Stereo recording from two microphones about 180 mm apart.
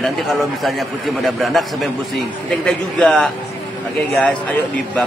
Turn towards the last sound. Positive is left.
turn(degrees=5)  # may be behind; listen again after turning